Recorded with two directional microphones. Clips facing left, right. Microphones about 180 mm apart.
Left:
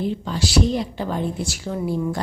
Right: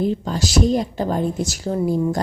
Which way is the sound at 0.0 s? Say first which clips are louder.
Right 3 dB; 45° right (ahead or behind).